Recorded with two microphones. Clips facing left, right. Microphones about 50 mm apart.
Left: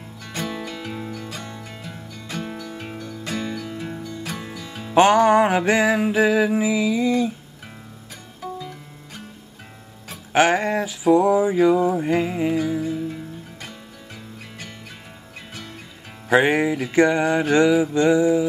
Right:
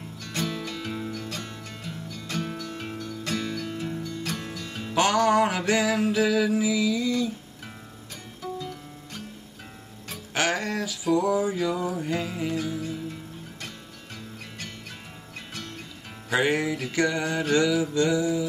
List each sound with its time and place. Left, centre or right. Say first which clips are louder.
0.2 s music: left 2 dB; centre
4.9 s mantra: left 7 dB; left
8.4 s music: left 2 dB; centre
10.3 s mantra: left 8 dB; left
12.5 s music: left 7 dB; centre
16.3 s mantra: left 6 dB; left